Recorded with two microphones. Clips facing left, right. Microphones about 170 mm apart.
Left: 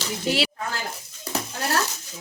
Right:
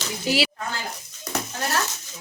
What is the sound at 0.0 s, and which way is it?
Speech, 5° right (ahead or behind).